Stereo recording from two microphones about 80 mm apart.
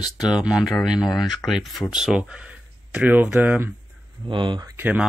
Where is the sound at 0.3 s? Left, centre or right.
Centre.